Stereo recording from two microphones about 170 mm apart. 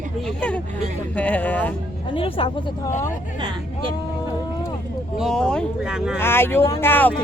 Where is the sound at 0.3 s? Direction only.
5° left (ahead or behind).